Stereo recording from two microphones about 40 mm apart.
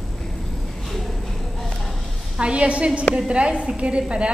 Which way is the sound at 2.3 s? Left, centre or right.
Right.